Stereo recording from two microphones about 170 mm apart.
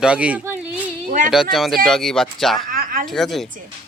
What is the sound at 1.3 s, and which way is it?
Speech, centre (ahead or behind).